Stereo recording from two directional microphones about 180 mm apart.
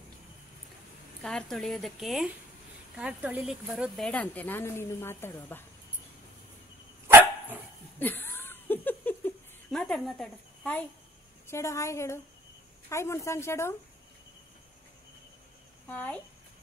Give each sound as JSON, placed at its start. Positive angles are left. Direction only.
{"t": 1.2, "sound": "speech", "side_deg": 5}
{"t": 7.1, "sound": "dog", "side_deg": -10}
{"t": 8.0, "sound": "a sound", "side_deg": 10}
{"t": 11.4, "sound": "speech", "side_deg": 15}
{"t": 15.9, "sound": "speech", "side_deg": 10}